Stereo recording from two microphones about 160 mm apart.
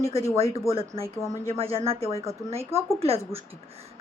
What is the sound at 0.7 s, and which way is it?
A woman's voice, 35° right (ahead or behind).